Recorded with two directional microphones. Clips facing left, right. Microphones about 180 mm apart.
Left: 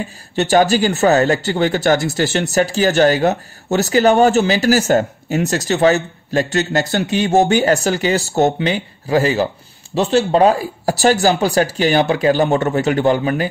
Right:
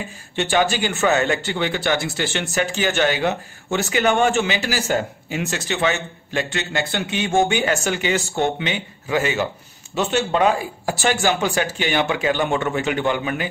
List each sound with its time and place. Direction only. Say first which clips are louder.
0.4 s a man's voice: left 6 dB; 40° left (ahead or behind)